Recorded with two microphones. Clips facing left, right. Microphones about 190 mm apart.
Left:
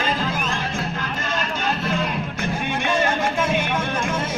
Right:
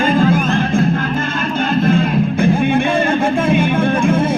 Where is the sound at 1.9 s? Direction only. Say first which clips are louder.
Right 10 dB; 55° right (ahead or behind).